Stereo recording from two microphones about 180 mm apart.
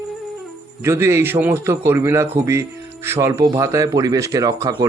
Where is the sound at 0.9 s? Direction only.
15° right (ahead or behind).